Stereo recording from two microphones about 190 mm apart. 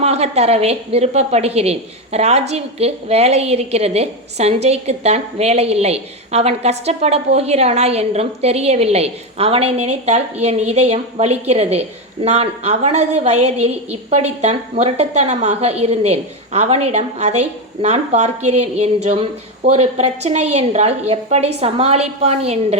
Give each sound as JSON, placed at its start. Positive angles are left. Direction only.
{"t": 0.0, "sound": "a woman's voice", "side_deg": -35}